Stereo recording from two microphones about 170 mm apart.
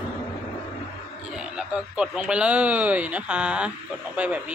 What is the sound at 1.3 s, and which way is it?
Speech, 5° right (ahead or behind).